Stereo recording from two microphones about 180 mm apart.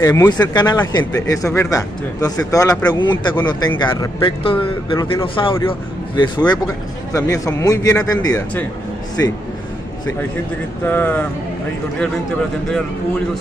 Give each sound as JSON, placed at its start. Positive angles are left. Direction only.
{"t": 0.0, "sound": "speech", "side_deg": 15}
{"t": 10.9, "sound": "speech", "side_deg": 10}